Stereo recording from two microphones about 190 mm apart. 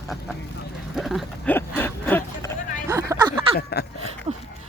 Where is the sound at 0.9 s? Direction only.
Centre (ahead or behind).